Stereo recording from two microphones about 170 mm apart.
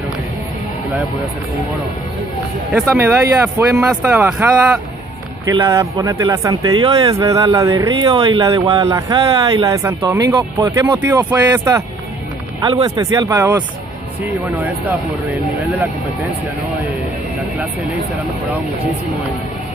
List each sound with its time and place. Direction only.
2.7 s speech: 15° right (ahead or behind)